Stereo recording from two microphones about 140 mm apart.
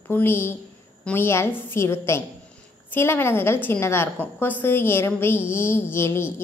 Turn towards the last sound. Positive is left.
turn(degrees=20)  # may be behind; listen again after turning